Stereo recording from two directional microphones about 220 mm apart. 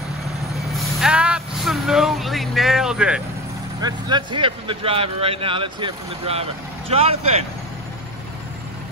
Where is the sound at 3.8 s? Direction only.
20° right (ahead or behind).